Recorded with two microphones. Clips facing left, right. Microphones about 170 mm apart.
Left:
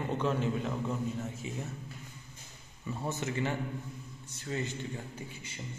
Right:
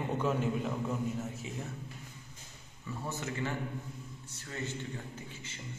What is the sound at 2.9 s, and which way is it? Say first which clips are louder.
Speech: left 3 dB; 20° left (ahead or behind).